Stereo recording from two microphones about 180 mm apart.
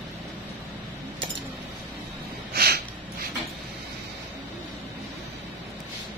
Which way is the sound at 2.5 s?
60° right (ahead or behind).